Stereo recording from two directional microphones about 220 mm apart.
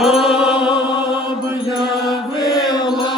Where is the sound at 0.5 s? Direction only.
25° left (ahead or behind).